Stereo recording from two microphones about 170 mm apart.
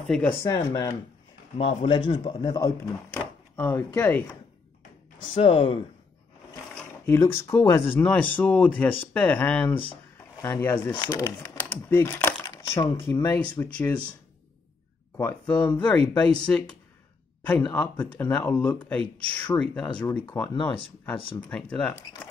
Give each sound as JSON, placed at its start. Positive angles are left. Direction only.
{"t": 0.1, "sound": "speech", "side_deg": 5}
{"t": 0.4, "sound": "speech", "side_deg": 20}
{"t": 1.6, "sound": "speech", "side_deg": 35}
{"t": 5.2, "sound": "speech", "side_deg": 30}
{"t": 7.1, "sound": "speech", "side_deg": 15}
{"t": 11.0, "sound": "speech", "side_deg": 20}
{"t": 11.4, "sound": "speech", "side_deg": 10}
{"t": 12.7, "sound": "speech", "side_deg": 30}
{"t": 13.0, "sound": "speech", "side_deg": 15}
{"t": 15.1, "sound": "speech", "side_deg": 10}
{"t": 19.9, "sound": "speech", "side_deg": 25}
{"t": 21.2, "sound": "speech", "side_deg": 30}
{"t": 21.5, "sound": "speech", "side_deg": 5}